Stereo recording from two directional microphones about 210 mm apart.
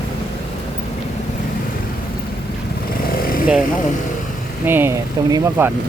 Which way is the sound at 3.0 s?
45° left (ahead or behind).